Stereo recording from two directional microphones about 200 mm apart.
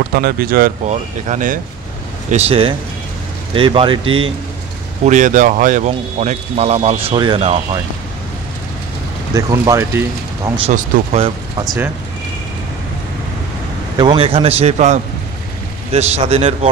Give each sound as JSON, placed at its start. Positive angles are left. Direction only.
{"t": 0.1, "sound": "speech", "side_deg": -50}
{"t": 5.0, "sound": "speech", "side_deg": -40}
{"t": 9.3, "sound": "speech", "side_deg": -15}
{"t": 10.7, "sound": "speech", "side_deg": -30}
{"t": 13.9, "sound": "speech", "side_deg": -25}